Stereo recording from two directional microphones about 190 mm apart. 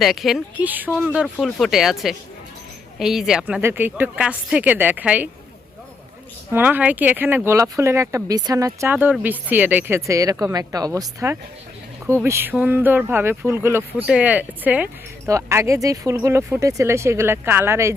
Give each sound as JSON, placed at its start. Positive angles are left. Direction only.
{"t": 0.0, "sound": "a woman's voice", "side_deg": 0}
{"t": 6.5, "sound": "speech", "side_deg": -10}